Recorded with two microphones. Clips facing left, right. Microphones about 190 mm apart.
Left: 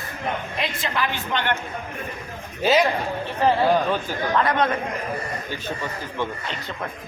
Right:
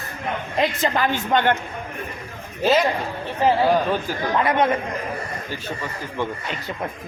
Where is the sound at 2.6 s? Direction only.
Centre (ahead or behind).